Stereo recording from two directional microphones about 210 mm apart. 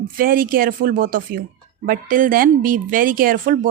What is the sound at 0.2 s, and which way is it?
Speech, 45° right (ahead or behind).